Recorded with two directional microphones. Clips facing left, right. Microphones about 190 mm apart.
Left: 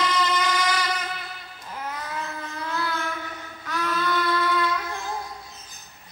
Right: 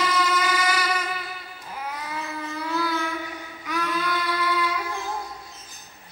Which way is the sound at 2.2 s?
10° right (ahead or behind).